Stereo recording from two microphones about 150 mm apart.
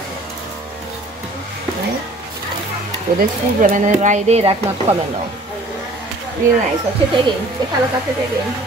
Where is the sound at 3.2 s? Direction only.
65° right (ahead or behind); by 4.9 s 40° right (ahead or behind).